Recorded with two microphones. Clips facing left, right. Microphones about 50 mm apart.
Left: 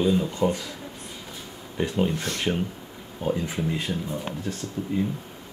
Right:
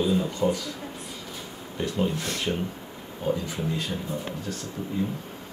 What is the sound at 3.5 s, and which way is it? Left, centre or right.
Speech, left.